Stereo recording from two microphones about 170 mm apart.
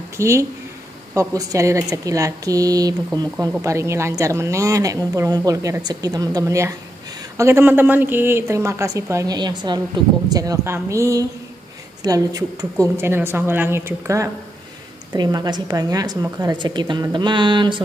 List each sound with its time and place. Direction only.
0.2 s a woman's voice: 15° right (ahead or behind)